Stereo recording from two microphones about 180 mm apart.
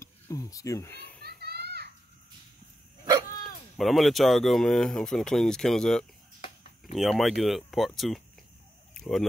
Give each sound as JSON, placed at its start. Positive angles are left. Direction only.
{"t": 0.0, "sound": "a sound", "side_deg": 20}
{"t": 1.2, "sound": "children playing", "side_deg": -65}
{"t": 3.7, "sound": "speech", "side_deg": 0}